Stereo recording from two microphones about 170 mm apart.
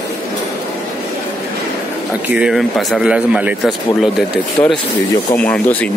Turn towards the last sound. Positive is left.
turn(degrees=10)  # may be behind; listen again after turning